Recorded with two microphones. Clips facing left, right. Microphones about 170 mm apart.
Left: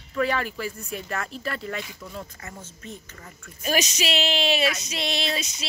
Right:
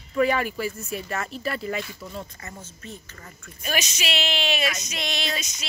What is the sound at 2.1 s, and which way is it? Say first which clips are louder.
Speech: left 1 dB; centre (ahead or behind).